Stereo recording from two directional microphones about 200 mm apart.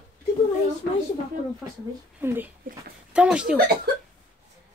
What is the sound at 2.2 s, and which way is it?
Speech, 10° right (ahead or behind).